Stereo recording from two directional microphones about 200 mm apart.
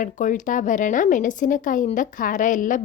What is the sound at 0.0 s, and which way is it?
A woman's voice, 40° left (ahead or behind).